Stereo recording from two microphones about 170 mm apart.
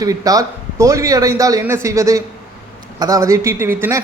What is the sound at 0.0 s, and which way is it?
Speech, 20° right (ahead or behind).